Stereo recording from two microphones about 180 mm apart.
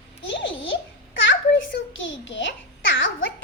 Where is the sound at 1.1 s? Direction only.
90° left.